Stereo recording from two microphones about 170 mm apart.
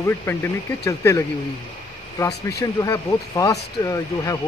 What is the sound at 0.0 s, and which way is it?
Speech, 15° left (ahead or behind).